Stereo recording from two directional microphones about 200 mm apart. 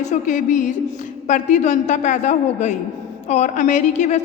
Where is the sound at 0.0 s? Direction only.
35° left (ahead or behind).